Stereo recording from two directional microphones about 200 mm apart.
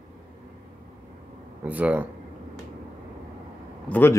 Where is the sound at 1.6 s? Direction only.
5° right (ahead or behind).